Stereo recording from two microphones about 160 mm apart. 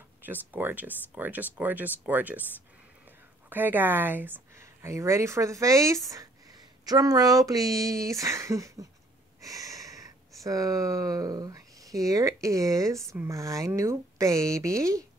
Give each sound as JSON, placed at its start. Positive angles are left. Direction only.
{"t": 0.2, "sound": "speech", "side_deg": -10}
{"t": 3.4, "sound": "speech", "side_deg": -10}
{"t": 9.4, "sound": "a sound", "side_deg": -20}
{"t": 10.3, "sound": "speech", "side_deg": -20}